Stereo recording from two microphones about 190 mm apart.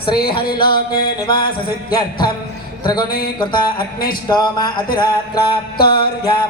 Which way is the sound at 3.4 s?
25° left (ahead or behind).